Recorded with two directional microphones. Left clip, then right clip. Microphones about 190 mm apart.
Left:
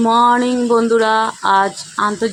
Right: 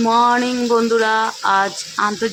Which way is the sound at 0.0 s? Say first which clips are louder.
Left 2 dB; 20° left (ahead or behind).